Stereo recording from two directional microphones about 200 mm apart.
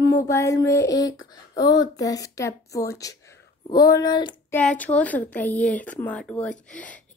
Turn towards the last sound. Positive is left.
turn(degrees=5)  # may be behind; listen again after turning